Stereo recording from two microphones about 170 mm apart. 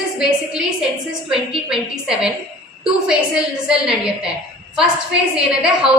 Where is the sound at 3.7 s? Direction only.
5° right (ahead or behind).